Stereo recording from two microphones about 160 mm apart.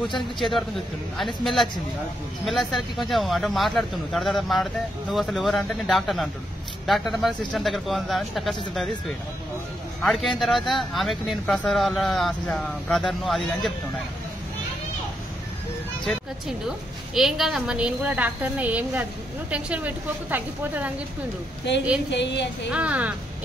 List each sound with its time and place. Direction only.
0.1 s speech: centre (ahead or behind)
16.0 s speech: centre (ahead or behind)
21.7 s a woman's voice: 90° left
22.7 s speech: 10° right (ahead or behind)